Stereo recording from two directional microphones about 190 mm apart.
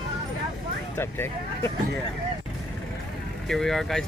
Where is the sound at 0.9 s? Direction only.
10° left (ahead or behind).